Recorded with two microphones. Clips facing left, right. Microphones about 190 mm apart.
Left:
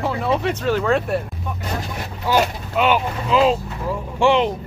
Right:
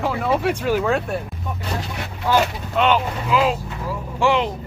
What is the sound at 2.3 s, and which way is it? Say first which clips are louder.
Speech: even; 10° left (ahead or behind).